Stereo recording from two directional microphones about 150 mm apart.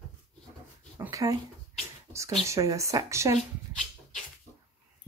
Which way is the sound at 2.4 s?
20° right (ahead or behind).